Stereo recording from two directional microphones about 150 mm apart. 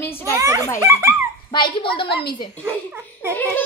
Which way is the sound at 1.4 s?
30° left (ahead or behind).